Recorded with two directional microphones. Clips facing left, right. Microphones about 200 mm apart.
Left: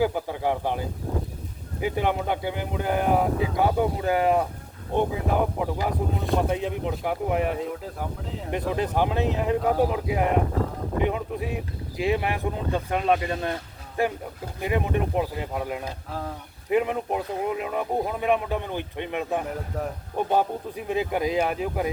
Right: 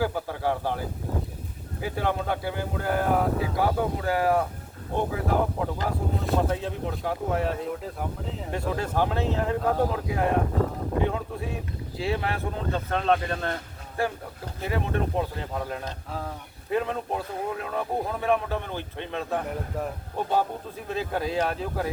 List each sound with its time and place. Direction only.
0.0 s speech: 15° left (ahead or behind)
7.7 s speech: centre (ahead or behind)
8.4 s speech: 20° left (ahead or behind)